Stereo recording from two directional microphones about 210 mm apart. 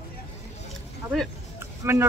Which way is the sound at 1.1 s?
10° right (ahead or behind).